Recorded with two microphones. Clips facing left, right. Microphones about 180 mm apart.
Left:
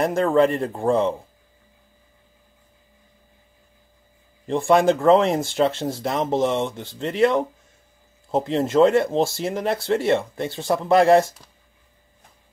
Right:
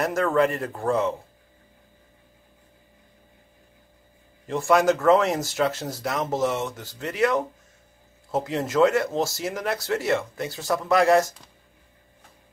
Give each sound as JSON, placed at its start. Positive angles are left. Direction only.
{"t": 0.0, "sound": "speech", "side_deg": 30}
{"t": 4.6, "sound": "speech", "side_deg": 30}